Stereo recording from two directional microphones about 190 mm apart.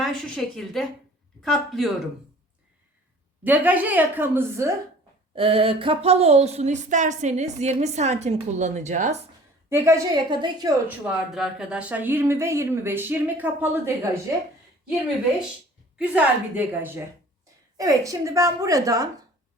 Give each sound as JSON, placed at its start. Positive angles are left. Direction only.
{"t": 0.0, "sound": "a woman's voice", "side_deg": 0}
{"t": 3.4, "sound": "speech", "side_deg": -10}
{"t": 5.3, "sound": "speech", "side_deg": -30}
{"t": 9.6, "sound": "a woman's voice", "side_deg": -15}
{"t": 10.8, "sound": "speech", "side_deg": -5}
{"t": 16.0, "sound": "speech", "side_deg": -10}